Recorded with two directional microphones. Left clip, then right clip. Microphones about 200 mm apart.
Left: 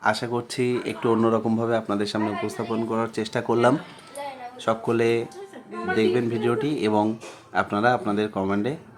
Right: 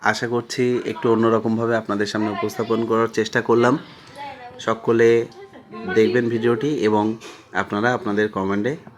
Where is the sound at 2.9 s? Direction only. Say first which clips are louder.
Right 8 dB; 10° right (ahead or behind).